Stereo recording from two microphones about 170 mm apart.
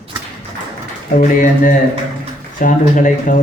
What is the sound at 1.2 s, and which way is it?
A man's voice, 50° left (ahead or behind).